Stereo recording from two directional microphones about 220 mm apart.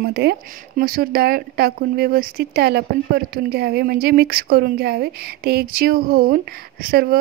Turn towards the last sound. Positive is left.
turn(degrees=-45)  # may be behind; listen again after turning